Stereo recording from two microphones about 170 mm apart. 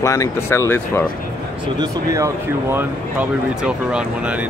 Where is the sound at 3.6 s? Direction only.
5° right (ahead or behind).